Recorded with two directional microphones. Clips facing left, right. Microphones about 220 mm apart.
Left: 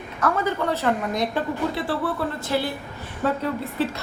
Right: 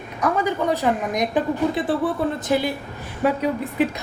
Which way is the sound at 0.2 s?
15° right (ahead or behind).